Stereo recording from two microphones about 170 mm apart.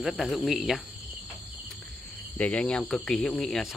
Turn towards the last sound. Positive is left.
turn(degrees=0)  # may be behind; listen again after turning